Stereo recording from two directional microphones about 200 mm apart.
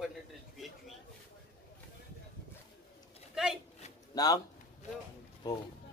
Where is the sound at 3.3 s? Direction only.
5° right (ahead or behind).